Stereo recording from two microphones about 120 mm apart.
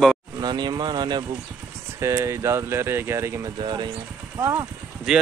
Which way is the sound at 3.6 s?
40° right (ahead or behind).